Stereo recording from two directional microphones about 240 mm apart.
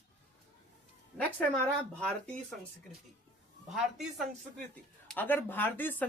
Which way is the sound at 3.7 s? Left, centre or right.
Centre.